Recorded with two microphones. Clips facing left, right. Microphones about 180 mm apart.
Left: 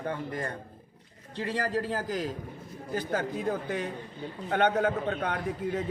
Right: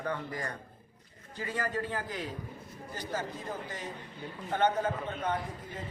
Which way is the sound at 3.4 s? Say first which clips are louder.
Left 8 dB; 65° left (ahead or behind).